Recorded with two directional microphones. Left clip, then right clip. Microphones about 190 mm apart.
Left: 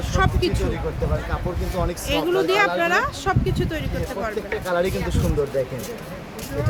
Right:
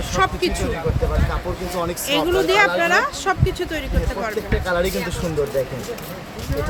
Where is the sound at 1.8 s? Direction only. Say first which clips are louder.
Right 3 dB; 5° right (ahead or behind).